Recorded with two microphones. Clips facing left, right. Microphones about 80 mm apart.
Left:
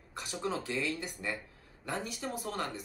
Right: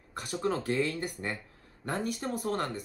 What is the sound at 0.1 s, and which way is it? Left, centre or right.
A woman's voice, right.